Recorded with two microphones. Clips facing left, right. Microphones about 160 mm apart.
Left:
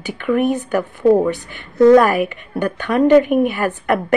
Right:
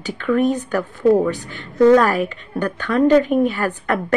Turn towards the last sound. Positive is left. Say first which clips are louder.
# left 3 dB
turn(degrees=15)  # may be behind; listen again after turning